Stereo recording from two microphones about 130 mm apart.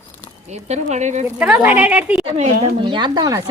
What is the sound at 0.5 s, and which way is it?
Speech, 60° right (ahead or behind).